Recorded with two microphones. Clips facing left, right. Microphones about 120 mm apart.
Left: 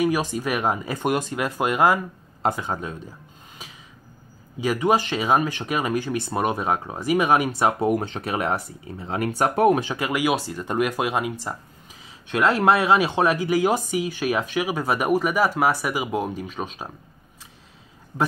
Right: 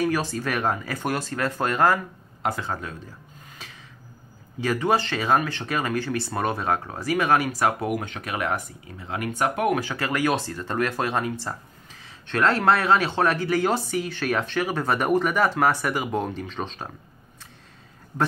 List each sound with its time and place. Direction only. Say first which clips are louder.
0.0 s speech: left 2 dB; 15° left (ahead or behind)
4.6 s speech: left 2 dB; 15° left (ahead or behind); by 9.8 s 35° left (ahead or behind)
9.8 s speech: left 1 dB; 15° left (ahead or behind)